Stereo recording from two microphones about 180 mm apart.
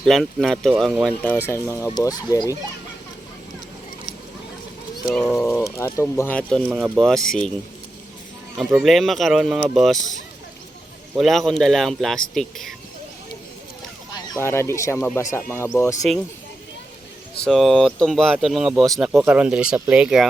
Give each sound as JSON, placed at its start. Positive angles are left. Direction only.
{"t": 0.0, "sound": "speech", "side_deg": 0}
{"t": 1.5, "sound": "speech", "side_deg": 15}
{"t": 5.0, "sound": "speech", "side_deg": 5}
{"t": 5.3, "sound": "speech", "side_deg": 15}
{"t": 8.8, "sound": "speech", "side_deg": 0}
{"t": 14.1, "sound": "speech", "side_deg": 15}
{"t": 17.4, "sound": "speech", "side_deg": 0}